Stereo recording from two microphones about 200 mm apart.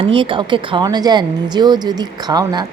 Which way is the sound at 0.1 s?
25° right (ahead or behind).